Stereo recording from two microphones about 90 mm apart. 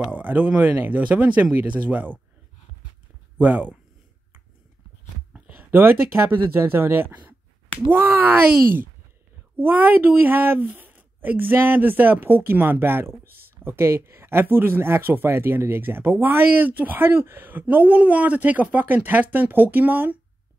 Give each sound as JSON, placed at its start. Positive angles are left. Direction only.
{"t": 0.1, "sound": "speech", "side_deg": -20}
{"t": 3.3, "sound": "speech", "side_deg": -20}
{"t": 5.3, "sound": "speech", "side_deg": -20}